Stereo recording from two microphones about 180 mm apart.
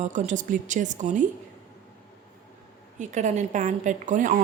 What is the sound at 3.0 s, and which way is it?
A woman's voice, 40° right (ahead or behind).